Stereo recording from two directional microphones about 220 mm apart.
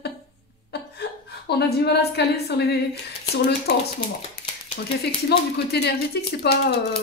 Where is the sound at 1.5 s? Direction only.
45° left (ahead or behind).